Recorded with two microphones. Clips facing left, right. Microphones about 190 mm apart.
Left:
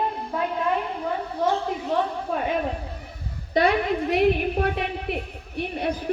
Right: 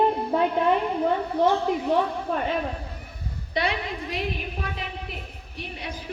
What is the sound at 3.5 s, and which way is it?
A woman's voice, 50° left (ahead or behind).